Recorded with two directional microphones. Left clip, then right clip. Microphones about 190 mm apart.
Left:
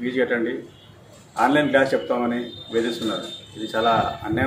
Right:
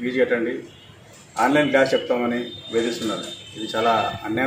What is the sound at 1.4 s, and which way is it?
A man's voice, centre (ahead or behind).